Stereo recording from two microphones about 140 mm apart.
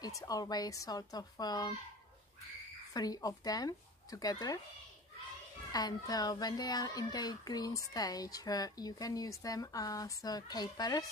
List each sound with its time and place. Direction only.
0.0 s speech: 25° left (ahead or behind)
2.9 s speech: 25° left (ahead or behind)
5.7 s speech: 30° left (ahead or behind)